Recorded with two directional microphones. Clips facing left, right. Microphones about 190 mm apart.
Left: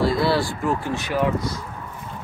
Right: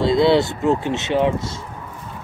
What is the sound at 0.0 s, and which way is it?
Speech, 20° right (ahead or behind).